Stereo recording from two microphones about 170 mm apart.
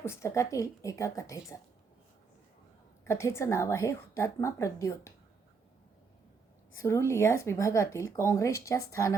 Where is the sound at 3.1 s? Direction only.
15° left (ahead or behind).